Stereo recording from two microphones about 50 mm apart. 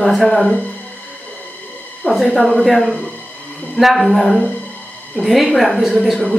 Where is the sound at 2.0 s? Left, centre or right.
Left.